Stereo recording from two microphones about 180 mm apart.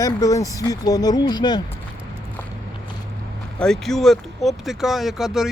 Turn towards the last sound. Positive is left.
turn(degrees=0)  # may be behind; listen again after turning